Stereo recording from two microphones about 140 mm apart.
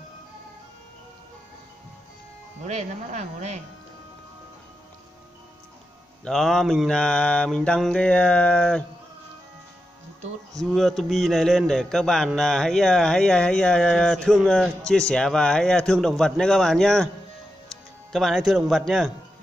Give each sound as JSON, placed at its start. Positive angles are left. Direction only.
{"t": 2.6, "sound": "speech", "side_deg": -55}
{"t": 6.2, "sound": "a man's voice", "side_deg": 0}
{"t": 10.6, "sound": "a man's voice", "side_deg": 0}